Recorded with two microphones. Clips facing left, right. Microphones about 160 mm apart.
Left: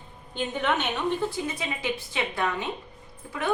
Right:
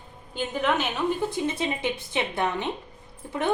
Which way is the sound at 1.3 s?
25° right (ahead or behind).